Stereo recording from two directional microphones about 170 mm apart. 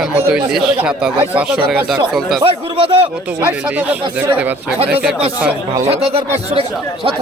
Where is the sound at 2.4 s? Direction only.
30° right (ahead or behind).